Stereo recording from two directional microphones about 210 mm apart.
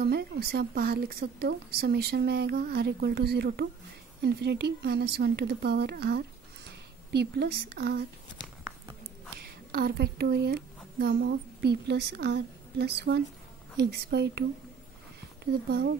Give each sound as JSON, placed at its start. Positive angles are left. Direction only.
{"t": 0.0, "sound": "a woman's voice", "side_deg": -50}
{"t": 9.4, "sound": "a woman's voice", "side_deg": -45}